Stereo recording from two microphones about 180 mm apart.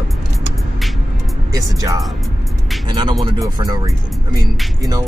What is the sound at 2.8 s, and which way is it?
Speech, 25° right (ahead or behind).